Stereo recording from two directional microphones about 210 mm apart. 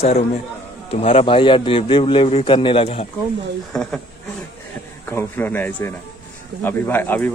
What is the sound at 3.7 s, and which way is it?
Speech, 5° left (ahead or behind).